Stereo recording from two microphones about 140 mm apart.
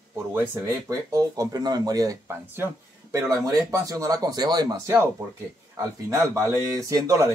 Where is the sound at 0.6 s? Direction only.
25° right (ahead or behind).